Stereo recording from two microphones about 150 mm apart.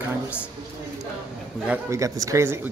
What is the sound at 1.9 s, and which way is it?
Speech, 20° right (ahead or behind).